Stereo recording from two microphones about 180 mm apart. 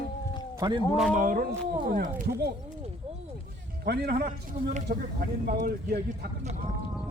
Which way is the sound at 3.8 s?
60° right (ahead or behind).